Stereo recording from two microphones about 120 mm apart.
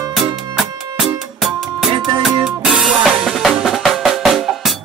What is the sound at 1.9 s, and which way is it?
Music, 40° right (ahead or behind).